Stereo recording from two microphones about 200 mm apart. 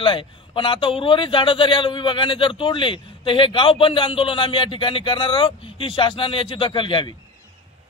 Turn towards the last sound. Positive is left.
turn(degrees=25)  # may be behind; listen again after turning